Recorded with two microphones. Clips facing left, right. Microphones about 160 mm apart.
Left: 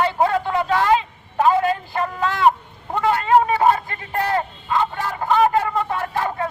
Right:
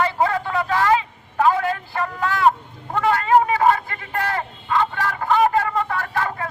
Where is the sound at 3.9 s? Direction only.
25° left (ahead or behind).